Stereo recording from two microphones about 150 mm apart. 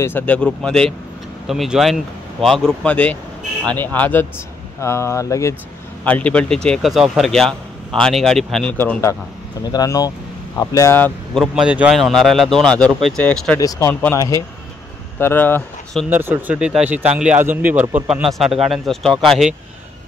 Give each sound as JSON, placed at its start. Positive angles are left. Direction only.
{"t": 0.0, "sound": "speech", "side_deg": 10}
{"t": 6.0, "sound": "speech", "side_deg": 10}
{"t": 8.7, "sound": "speech", "side_deg": 15}
{"t": 9.7, "sound": "speech", "side_deg": 25}
{"t": 11.4, "sound": "speech", "side_deg": -5}
{"t": 13.6, "sound": "speech", "side_deg": 20}
{"t": 16.1, "sound": "speech", "side_deg": -15}